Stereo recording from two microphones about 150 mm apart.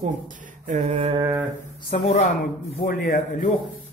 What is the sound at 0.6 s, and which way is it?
Mantra, 50° right (ahead or behind).